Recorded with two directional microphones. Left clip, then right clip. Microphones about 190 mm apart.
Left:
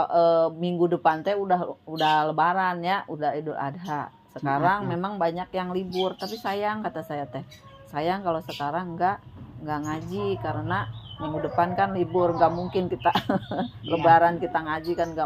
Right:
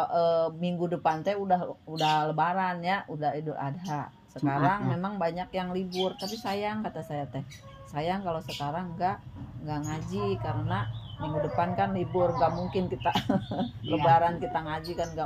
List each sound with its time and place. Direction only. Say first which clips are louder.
0.0 s speech: left 5 dB; 20° left (ahead or behind)